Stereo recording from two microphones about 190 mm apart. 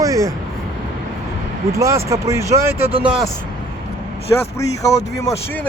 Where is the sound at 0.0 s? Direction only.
15° right (ahead or behind).